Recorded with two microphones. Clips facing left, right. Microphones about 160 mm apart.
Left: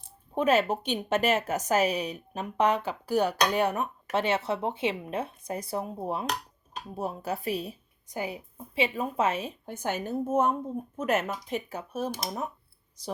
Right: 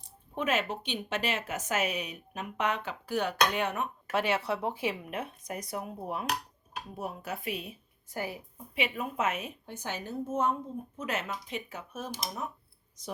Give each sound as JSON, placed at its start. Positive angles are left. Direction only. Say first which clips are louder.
{"t": 0.3, "sound": "a woman's voice", "louder": "left 7 dB", "side_deg": 35}
{"t": 4.2, "sound": "a woman's voice", "louder": "left 2 dB", "side_deg": 25}
{"t": 8.0, "sound": "a woman's voice", "louder": "left 3 dB", "side_deg": 20}
{"t": 8.5, "sound": "a woman's voice", "louder": "left 5 dB", "side_deg": 30}
{"t": 9.6, "sound": "speech", "louder": "left 9 dB", "side_deg": 50}